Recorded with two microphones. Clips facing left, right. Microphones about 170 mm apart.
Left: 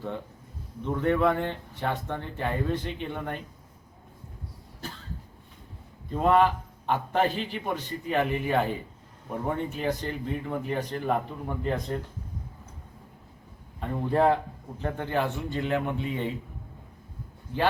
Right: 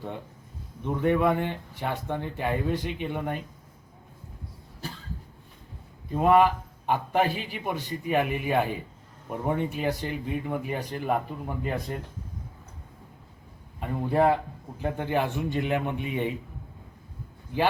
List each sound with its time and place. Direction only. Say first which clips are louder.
0.9 s a man's voice: right 1 dB; 15° right (ahead or behind)
6.1 s a man's voice: right 2 dB; 10° right (ahead or behind)
13.7 s a man's voice: right 1 dB; 10° right (ahead or behind)